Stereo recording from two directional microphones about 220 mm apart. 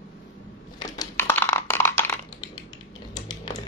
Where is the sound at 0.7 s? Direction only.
15° left (ahead or behind).